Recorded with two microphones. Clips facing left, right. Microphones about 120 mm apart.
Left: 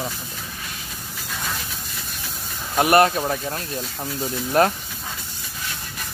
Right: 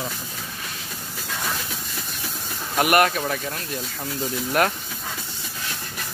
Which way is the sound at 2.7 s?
30° left (ahead or behind).